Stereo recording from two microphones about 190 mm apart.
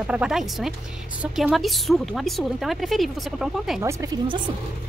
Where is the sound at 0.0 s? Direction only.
5° right (ahead or behind).